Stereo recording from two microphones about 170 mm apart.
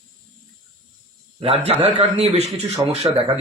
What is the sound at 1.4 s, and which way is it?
A man's voice, 35° right (ahead or behind).